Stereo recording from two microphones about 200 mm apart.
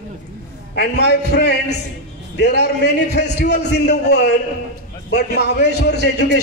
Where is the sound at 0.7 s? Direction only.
55° left (ahead or behind).